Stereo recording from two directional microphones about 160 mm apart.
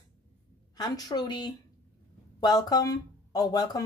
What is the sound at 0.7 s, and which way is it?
Speech, 25° left (ahead or behind).